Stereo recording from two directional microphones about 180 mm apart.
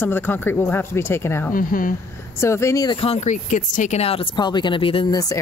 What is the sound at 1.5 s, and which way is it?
Speech, 50° left (ahead or behind).